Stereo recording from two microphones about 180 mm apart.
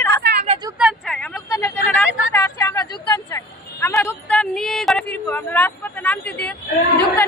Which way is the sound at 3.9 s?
5° left (ahead or behind).